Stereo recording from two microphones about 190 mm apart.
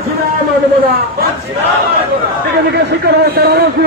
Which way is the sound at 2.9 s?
60° right (ahead or behind).